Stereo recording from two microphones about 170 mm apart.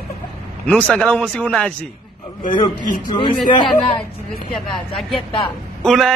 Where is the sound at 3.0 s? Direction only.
25° left (ahead or behind).